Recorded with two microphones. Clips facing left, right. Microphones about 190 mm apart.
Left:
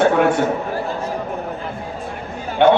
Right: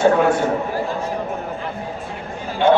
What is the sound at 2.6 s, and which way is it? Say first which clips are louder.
Speech: left 2 dB; 60° left (ahead or behind).